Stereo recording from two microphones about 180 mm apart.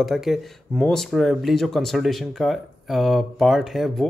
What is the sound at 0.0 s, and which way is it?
Speech, centre (ahead or behind).